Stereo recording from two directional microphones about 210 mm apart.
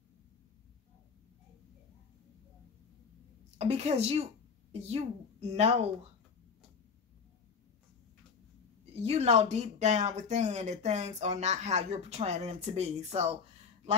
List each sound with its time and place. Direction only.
3.5 s speech: 30° right (ahead or behind)
9.0 s speech: 30° right (ahead or behind)